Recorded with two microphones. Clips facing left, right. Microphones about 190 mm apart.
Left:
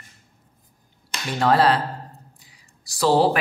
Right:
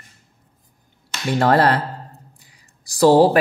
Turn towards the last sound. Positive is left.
turn(degrees=-45)  # may be behind; listen again after turning